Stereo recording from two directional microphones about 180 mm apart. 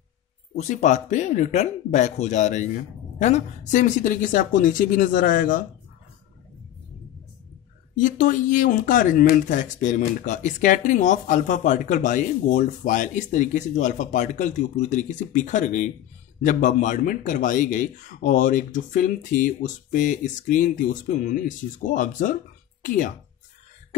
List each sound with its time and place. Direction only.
0.6 s speech: 40° left (ahead or behind)
7.9 s speech: 45° left (ahead or behind)